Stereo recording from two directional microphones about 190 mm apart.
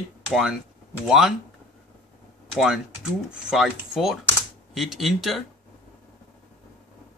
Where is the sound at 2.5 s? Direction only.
Centre (ahead or behind).